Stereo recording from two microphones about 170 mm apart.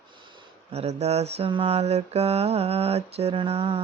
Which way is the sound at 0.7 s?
40° right (ahead or behind).